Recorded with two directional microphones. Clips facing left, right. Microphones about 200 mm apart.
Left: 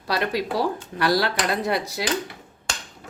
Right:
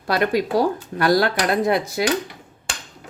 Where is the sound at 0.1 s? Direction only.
50° right (ahead or behind).